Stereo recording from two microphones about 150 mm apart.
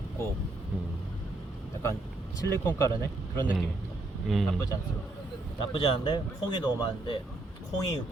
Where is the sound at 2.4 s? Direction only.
15° left (ahead or behind).